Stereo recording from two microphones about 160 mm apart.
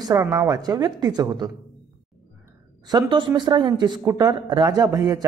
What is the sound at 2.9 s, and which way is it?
A man's voice, 30° right (ahead or behind).